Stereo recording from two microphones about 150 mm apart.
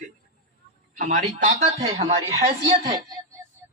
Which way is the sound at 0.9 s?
60° right (ahead or behind).